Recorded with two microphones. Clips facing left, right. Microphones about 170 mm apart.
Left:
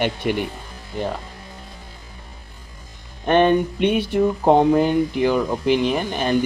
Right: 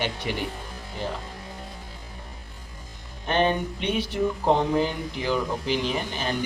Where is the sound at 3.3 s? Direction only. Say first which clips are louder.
Left 7 dB; 55° left (ahead or behind).